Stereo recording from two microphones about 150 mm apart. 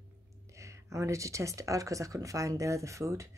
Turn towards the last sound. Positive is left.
turn(degrees=-20)  # may be behind; listen again after turning